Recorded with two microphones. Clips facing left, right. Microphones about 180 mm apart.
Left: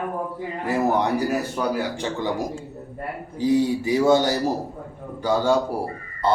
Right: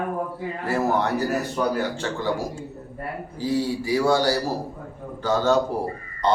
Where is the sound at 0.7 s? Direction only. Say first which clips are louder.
Left 2 dB; 15° left (ahead or behind).